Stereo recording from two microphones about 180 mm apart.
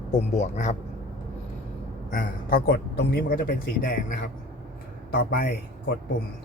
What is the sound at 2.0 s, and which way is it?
A man's voice, 50° left (ahead or behind).